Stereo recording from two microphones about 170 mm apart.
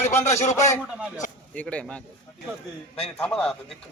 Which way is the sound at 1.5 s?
5° left (ahead or behind).